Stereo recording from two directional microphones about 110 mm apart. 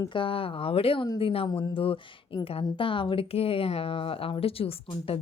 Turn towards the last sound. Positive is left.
turn(degrees=55)  # may be behind; listen again after turning